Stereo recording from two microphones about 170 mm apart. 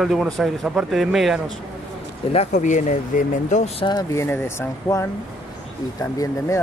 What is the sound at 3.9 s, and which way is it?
Speech, 20° left (ahead or behind).